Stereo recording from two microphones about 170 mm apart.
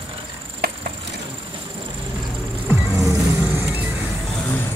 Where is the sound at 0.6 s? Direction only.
65° right (ahead or behind).